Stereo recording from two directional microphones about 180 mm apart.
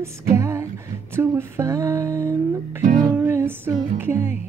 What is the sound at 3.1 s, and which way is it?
Music, 10° right (ahead or behind).